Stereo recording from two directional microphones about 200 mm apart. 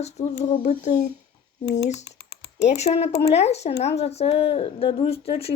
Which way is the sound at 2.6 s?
35° left (ahead or behind).